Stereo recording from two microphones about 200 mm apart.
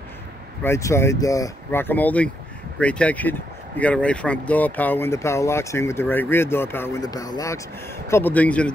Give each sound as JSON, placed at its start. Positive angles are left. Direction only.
{"t": 0.7, "sound": "speech", "side_deg": 15}